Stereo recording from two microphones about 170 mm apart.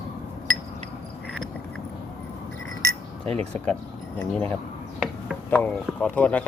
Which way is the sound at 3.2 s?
5° left (ahead or behind).